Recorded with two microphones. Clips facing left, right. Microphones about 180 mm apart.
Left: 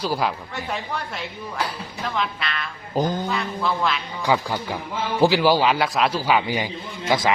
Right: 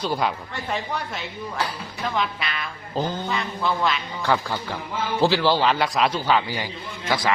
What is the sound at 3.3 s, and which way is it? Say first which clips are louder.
Speech: left 1 dB; centre (ahead or behind).